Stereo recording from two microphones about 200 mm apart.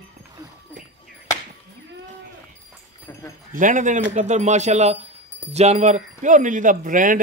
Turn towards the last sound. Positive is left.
turn(degrees=-40)  # may be behind; listen again after turning